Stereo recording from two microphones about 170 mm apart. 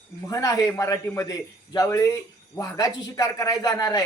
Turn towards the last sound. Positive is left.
turn(degrees=20)  # may be behind; listen again after turning